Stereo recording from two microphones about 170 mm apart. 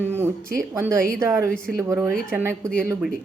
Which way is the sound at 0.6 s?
15° right (ahead or behind).